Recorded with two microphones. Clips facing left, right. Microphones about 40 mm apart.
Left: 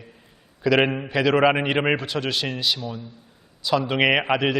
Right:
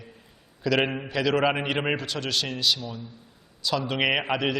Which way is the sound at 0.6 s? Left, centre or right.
Centre.